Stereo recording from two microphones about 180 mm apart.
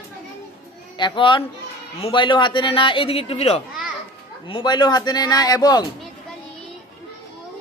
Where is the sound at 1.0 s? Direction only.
25° left (ahead or behind).